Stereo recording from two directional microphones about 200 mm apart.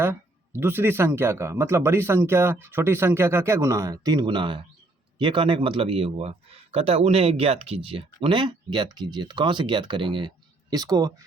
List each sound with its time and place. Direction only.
0.0 s speech: 10° right (ahead or behind)